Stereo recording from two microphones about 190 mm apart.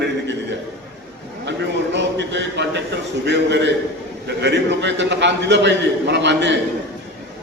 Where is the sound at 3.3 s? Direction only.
65° right (ahead or behind).